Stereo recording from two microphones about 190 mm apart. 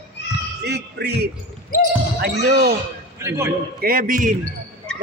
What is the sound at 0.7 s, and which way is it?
Music, 60° right (ahead or behind).